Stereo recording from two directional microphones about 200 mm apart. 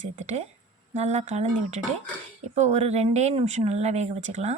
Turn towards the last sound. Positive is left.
turn(degrees=-35)  # may be behind; listen again after turning